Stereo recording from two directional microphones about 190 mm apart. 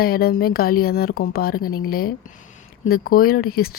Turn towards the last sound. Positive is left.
turn(degrees=55)  # may be behind; listen again after turning